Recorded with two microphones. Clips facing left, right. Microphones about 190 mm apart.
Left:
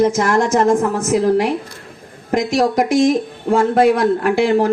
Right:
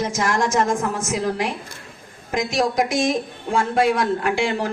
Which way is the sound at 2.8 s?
60° left (ahead or behind).